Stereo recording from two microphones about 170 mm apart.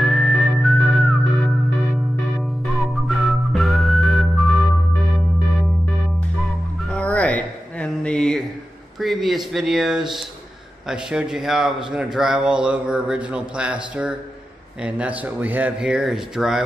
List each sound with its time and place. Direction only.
0.0 s whistling: centre (ahead or behind)
2.7 s whistling: centre (ahead or behind)
6.9 s a sound: 10° left (ahead or behind)
10.9 s speech: 5° right (ahead or behind)
14.8 s speech: 5° right (ahead or behind)